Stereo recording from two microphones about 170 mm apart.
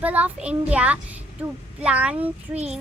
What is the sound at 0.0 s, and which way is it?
A child's voice, 10° right (ahead or behind).